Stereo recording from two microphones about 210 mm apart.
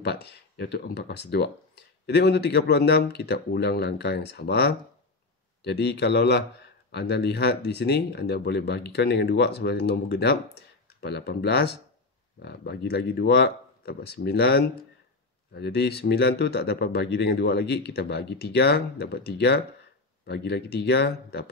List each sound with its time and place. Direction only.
0.0 s speech: 50° left (ahead or behind)